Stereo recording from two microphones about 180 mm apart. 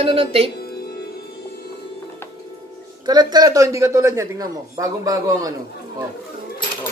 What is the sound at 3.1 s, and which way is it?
A man's voice, 25° right (ahead or behind).